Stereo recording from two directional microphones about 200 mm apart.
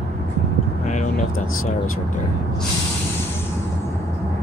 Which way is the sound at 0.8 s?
35° left (ahead or behind).